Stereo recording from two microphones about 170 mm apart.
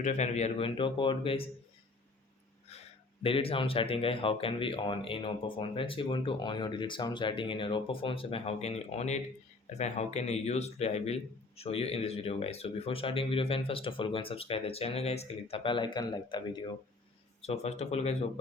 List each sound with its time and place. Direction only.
0.0 s a man's voice: 45° left (ahead or behind)
2.7 s a sound: 40° left (ahead or behind)
3.2 s a man's voice: 35° left (ahead or behind)
17.4 s a man's voice: 40° left (ahead or behind)